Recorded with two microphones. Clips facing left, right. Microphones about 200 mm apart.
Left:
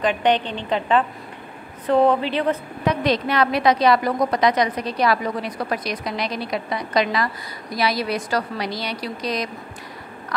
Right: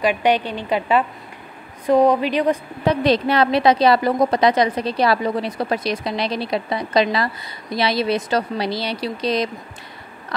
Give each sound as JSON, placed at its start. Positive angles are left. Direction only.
{"t": 0.0, "sound": "a woman's voice", "side_deg": -10}
{"t": 2.8, "sound": "a woman's voice", "side_deg": -30}